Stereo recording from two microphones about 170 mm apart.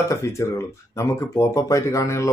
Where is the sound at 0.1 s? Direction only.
15° left (ahead or behind).